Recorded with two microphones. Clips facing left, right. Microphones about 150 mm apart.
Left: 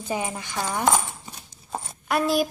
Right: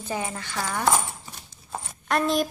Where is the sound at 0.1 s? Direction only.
15° left (ahead or behind).